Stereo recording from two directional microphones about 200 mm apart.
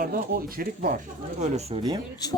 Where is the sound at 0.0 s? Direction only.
45° right (ahead or behind).